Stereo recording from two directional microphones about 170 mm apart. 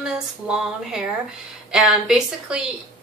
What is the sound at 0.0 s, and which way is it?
Speech, 5° right (ahead or behind).